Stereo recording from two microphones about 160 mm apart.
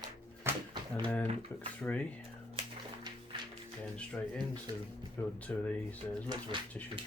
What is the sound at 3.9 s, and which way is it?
Speech, 5° left (ahead or behind).